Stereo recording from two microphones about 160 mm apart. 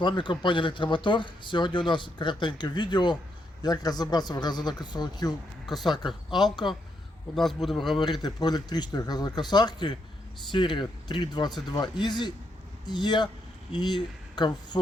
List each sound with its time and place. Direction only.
0.0 s speech: 30° left (ahead or behind)
6.1 s speech: centre (ahead or behind)
7.9 s speech: 25° left (ahead or behind)